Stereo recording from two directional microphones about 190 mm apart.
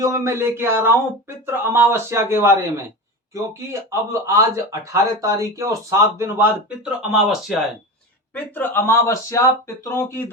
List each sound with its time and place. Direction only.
0.0 s speech: 15° right (ahead or behind); by 10.2 s 15° left (ahead or behind)